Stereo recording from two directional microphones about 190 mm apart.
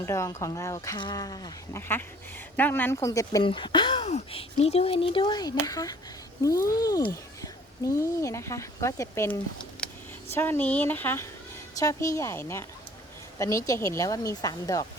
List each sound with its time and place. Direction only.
0.0 s speech: 15° left (ahead or behind)
9.8 s vehicle: 5° left (ahead or behind)
10.3 s speech: 10° left (ahead or behind)